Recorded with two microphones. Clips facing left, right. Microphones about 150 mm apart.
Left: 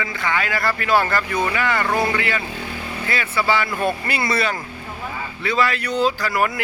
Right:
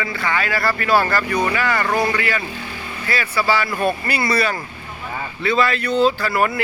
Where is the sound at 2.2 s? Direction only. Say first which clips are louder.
Right 1 dB; 20° left (ahead or behind).